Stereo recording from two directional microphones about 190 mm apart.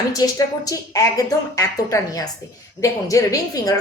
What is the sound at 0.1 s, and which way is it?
A woman's voice, 20° left (ahead or behind).